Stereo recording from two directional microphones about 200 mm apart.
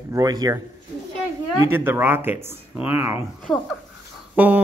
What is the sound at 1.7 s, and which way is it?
Speech, 10° right (ahead or behind).